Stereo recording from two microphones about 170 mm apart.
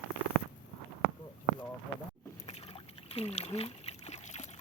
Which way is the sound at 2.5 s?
35° left (ahead or behind).